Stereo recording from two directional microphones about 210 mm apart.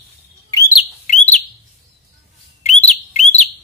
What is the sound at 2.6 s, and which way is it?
Bird, 35° left (ahead or behind).